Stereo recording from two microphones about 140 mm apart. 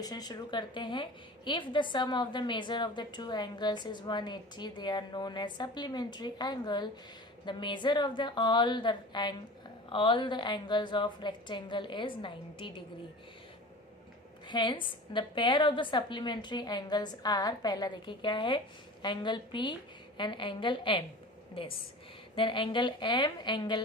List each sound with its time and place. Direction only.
0.0 s a woman's voice: 30° left (ahead or behind)
14.4 s a woman's voice: 35° left (ahead or behind)